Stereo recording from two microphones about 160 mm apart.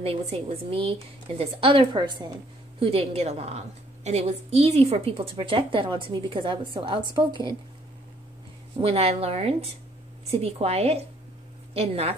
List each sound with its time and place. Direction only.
0.0 s a woman's voice: 35° right (ahead or behind)
2.8 s a woman's voice: 40° right (ahead or behind)
8.8 s a woman's voice: 40° right (ahead or behind)